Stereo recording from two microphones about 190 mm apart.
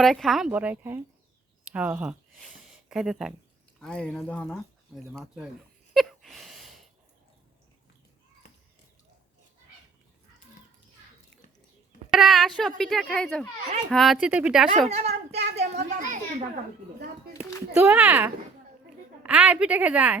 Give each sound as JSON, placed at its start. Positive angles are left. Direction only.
{"t": 0.0, "sound": "a woman's voice", "side_deg": 0}
{"t": 2.6, "sound": "a sound", "side_deg": 0}
{"t": 3.8, "sound": "speech", "side_deg": 5}
{"t": 5.9, "sound": "a sound", "side_deg": 0}
{"t": 12.1, "sound": "speech", "side_deg": 0}
{"t": 14.8, "sound": "a child's voice", "side_deg": -35}
{"t": 17.7, "sound": "a woman's voice", "side_deg": -10}